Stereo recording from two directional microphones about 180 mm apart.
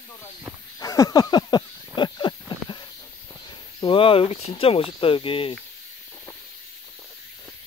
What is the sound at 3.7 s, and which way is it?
Speech, 30° left (ahead or behind).